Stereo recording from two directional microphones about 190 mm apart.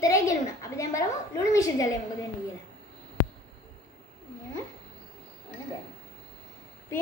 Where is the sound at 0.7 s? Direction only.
15° left (ahead or behind).